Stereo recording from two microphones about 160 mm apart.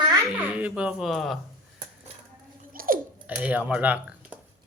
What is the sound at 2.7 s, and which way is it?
Chewing, 60° right (ahead or behind).